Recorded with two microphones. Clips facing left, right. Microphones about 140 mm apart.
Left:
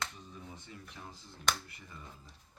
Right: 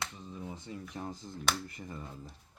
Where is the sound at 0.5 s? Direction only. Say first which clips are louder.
Right 8 dB; 35° right (ahead or behind).